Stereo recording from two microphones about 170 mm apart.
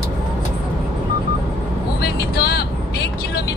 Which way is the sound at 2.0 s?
70° left (ahead or behind).